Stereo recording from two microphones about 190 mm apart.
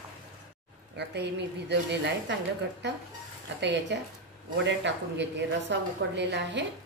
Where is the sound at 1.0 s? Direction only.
65° right (ahead or behind).